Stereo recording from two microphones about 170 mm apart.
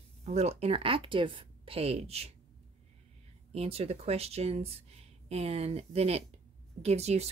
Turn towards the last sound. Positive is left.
turn(degrees=-40)  # may be behind; listen again after turning